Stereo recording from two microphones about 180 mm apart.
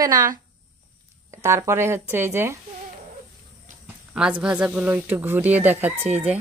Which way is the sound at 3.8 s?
5° right (ahead or behind).